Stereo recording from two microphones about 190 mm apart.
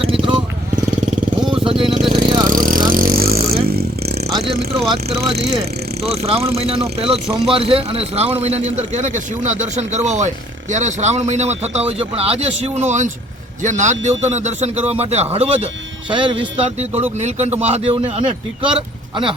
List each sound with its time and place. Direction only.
0.0 s vehicle: 30° right (ahead or behind)
1.6 s vehicle: 30° right (ahead or behind)
2.5 s vehicle: 45° right (ahead or behind)
4.2 s vehicle: 25° right (ahead or behind)
4.9 s a man's voice: 30° right (ahead or behind)